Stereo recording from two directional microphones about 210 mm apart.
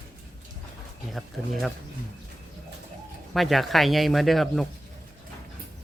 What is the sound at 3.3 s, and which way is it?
Speech, centre (ahead or behind).